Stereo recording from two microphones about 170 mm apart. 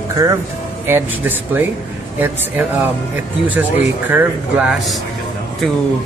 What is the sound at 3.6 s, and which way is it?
Speech, 10° right (ahead or behind).